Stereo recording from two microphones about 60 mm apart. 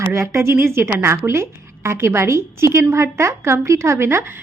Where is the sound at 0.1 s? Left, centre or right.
Right.